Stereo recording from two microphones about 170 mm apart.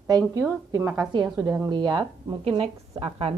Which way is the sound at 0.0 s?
20° right (ahead or behind).